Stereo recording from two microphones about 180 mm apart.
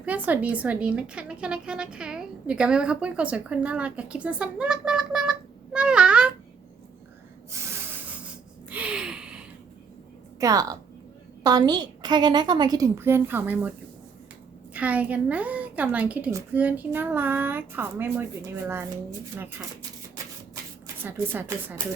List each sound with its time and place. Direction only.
0.0 s a woman's voice: 10° right (ahead or behind)
7.5 s snort: 15° right (ahead or behind)
8.7 s gasp: 5° right (ahead or behind)
10.4 s a woman's voice: 20° right (ahead or behind)
20.8 s speech: 10° right (ahead or behind)